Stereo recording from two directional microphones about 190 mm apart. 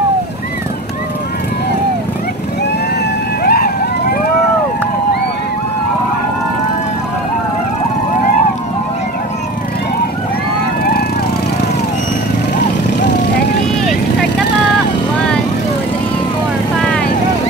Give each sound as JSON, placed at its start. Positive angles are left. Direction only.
{"t": 3.4, "sound": "vehicle", "side_deg": 50}
{"t": 10.8, "sound": "vehicle", "side_deg": 55}
{"t": 15.1, "sound": "vehicle", "side_deg": 5}
{"t": 16.7, "sound": "vehicle", "side_deg": 5}